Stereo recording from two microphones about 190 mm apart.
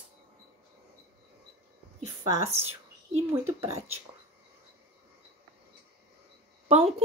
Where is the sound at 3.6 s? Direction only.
35° right (ahead or behind).